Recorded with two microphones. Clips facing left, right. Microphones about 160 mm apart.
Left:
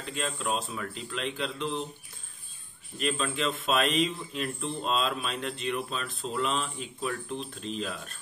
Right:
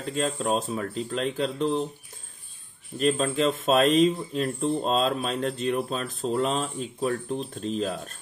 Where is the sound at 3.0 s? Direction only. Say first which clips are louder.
Right 7 dB; 40° right (ahead or behind).